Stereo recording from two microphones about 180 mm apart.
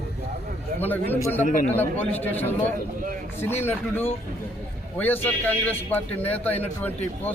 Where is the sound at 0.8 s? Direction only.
10° left (ahead or behind).